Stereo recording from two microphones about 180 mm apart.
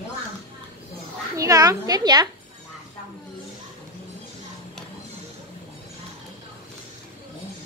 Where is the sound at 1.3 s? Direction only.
20° right (ahead or behind).